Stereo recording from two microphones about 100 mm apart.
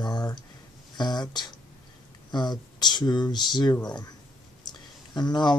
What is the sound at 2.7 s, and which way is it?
Speech, 45° left (ahead or behind).